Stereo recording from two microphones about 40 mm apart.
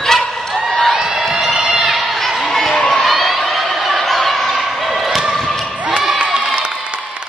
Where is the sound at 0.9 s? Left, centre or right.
Centre.